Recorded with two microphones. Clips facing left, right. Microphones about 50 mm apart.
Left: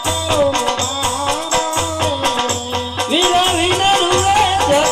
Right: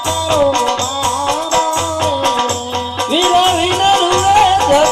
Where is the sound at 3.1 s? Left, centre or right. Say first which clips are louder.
Right 3 dB; centre.